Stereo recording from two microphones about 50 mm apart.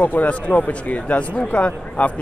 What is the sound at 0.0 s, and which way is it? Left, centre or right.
Speech, left.